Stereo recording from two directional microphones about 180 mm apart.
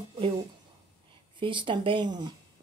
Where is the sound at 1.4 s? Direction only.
25° right (ahead or behind).